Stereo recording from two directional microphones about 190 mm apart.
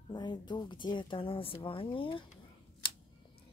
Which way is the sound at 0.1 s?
25° left (ahead or behind).